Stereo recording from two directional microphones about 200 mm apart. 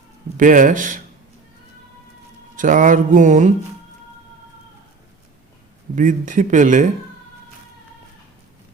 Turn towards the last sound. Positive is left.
turn(degrees=-40)  # may be behind; listen again after turning